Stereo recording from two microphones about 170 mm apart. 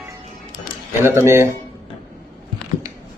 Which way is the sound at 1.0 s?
15° right (ahead or behind).